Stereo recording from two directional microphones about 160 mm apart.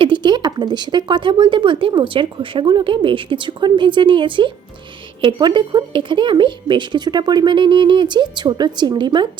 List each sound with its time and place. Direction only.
0.0 s speech: 30° right (ahead or behind)